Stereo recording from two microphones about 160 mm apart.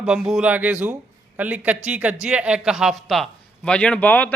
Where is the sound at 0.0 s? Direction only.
5° right (ahead or behind).